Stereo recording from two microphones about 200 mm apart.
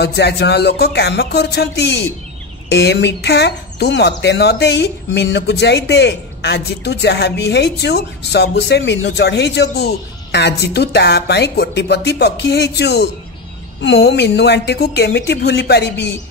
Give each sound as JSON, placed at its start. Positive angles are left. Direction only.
{"t": 0.0, "sound": "speech", "side_deg": 55}